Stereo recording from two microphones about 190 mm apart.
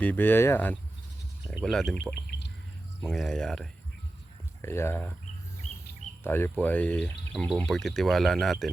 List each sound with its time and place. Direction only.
0.0 s speech: 10° left (ahead or behind)
2.2 s bird: 60° left (ahead or behind)
3.0 s speech: centre (ahead or behind)
4.6 s speech: 15° left (ahead or behind)
6.2 s speech: 10° left (ahead or behind)